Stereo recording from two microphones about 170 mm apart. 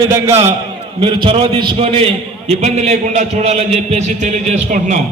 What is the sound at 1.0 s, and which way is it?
A man's voice, 30° right (ahead or behind).